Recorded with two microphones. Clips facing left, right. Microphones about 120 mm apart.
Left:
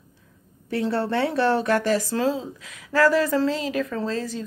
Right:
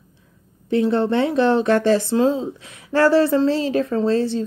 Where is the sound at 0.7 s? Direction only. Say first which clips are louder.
Right 6 dB; 20° right (ahead or behind).